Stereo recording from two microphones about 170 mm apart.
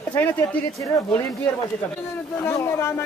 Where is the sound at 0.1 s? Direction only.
10° left (ahead or behind).